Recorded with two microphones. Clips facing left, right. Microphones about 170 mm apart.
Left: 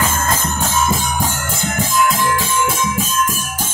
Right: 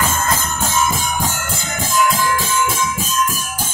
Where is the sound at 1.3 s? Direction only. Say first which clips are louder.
Left 3 dB; 55° left (ahead or behind).